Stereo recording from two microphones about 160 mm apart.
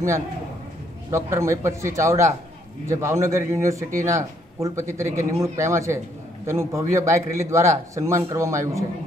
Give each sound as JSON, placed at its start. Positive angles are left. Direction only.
{"t": 1.1, "sound": "a man's voice", "side_deg": -15}